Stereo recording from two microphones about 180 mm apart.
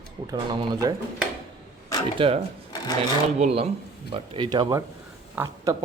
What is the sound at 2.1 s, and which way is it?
Speech, 30° right (ahead or behind).